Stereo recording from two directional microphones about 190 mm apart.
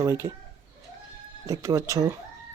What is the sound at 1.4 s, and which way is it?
Speech, 15° right (ahead or behind).